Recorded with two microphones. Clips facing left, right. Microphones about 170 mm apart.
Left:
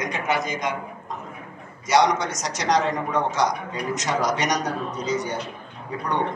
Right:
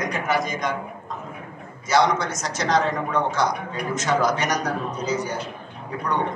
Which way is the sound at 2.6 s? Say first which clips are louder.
Even; 20° left (ahead or behind).